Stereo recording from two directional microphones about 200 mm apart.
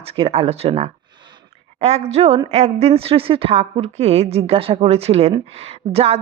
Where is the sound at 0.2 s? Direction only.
30° right (ahead or behind).